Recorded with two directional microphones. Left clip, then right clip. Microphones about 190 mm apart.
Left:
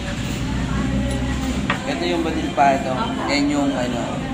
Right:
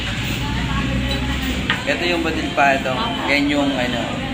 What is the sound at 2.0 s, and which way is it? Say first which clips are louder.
Speech: right 2 dB; 5° right (ahead or behind).